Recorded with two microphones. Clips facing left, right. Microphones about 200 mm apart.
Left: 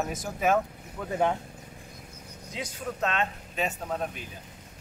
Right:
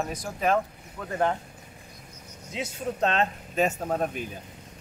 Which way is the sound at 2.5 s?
25° right (ahead or behind).